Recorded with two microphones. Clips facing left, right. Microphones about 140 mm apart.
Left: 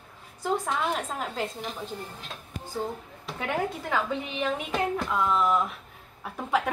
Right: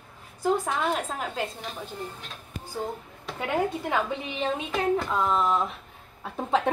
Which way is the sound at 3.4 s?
20° right (ahead or behind).